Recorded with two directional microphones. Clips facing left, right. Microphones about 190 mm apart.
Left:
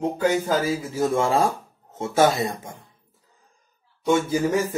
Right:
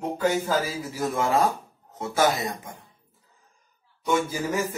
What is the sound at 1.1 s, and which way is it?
Speech, 30° left (ahead or behind).